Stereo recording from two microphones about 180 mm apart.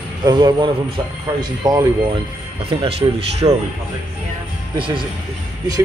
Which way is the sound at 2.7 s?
35° right (ahead or behind).